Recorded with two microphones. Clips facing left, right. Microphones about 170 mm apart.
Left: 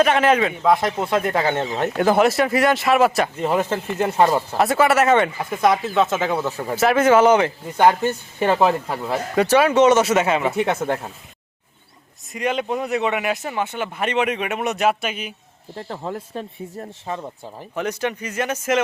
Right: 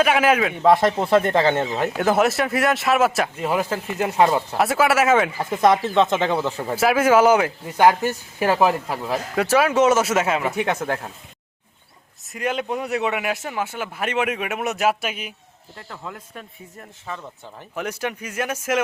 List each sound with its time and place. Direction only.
0.0 s speech: 5° right (ahead or behind)
5.4 s speech: 25° right (ahead or behind)
6.1 s speech: 5° left (ahead or behind)
6.7 s speech: 5° right (ahead or behind)
12.3 s speech: 5° right (ahead or behind)
15.7 s speech: 30° left (ahead or behind)
17.7 s speech: 5° right (ahead or behind)